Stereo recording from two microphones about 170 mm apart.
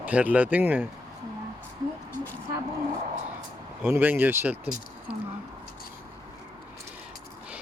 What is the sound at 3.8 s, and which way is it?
Speech, 10° right (ahead or behind).